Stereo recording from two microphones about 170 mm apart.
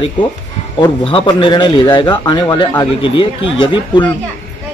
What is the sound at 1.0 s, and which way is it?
Speech, 30° left (ahead or behind).